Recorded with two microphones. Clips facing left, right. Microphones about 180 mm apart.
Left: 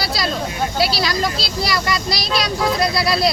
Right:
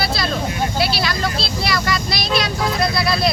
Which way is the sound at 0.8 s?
35° left (ahead or behind).